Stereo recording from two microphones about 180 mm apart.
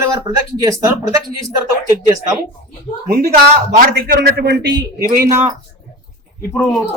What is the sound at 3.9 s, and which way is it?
Speech, 60° right (ahead or behind).